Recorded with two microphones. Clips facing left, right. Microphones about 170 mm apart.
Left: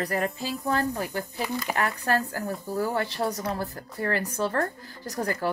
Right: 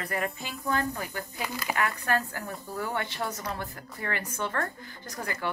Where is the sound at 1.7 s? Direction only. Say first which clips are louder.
Left 1 dB; 40° left (ahead or behind).